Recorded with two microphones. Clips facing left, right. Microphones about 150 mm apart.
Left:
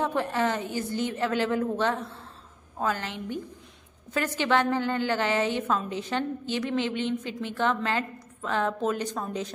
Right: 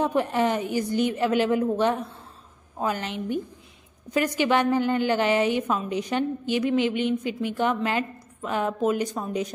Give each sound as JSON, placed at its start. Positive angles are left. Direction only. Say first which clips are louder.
{"t": 0.0, "sound": "a woman's voice", "louder": "right 3 dB", "side_deg": -15}